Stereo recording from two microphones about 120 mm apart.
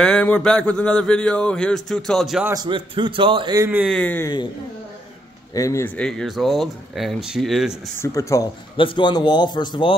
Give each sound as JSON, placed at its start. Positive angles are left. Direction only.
{"t": 0.0, "sound": "speech", "side_deg": 10}
{"t": 2.5, "sound": "a man's voice", "side_deg": -40}
{"t": 3.9, "sound": "speech", "side_deg": 10}
{"t": 5.5, "sound": "speech", "side_deg": 25}
{"t": 5.9, "sound": "speech", "side_deg": 5}
{"t": 8.0, "sound": "speech", "side_deg": 25}
{"t": 8.7, "sound": "speech", "side_deg": 40}